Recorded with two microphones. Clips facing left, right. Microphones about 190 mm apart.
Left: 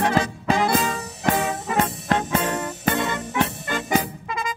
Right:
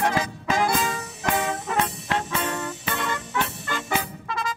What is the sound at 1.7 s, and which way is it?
Music, 45° left (ahead or behind).